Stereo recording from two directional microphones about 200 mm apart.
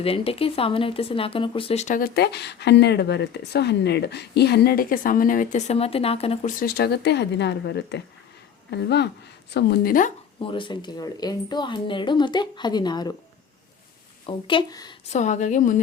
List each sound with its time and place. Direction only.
0.0 s a woman's voice: 30° left (ahead or behind); by 10.1 s 45° left (ahead or behind)
10.4 s speech: 25° left (ahead or behind)
14.3 s speech: 25° left (ahead or behind)
15.1 s a woman's voice: 35° left (ahead or behind)